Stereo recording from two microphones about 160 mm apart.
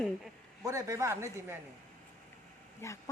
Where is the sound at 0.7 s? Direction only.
20° right (ahead or behind).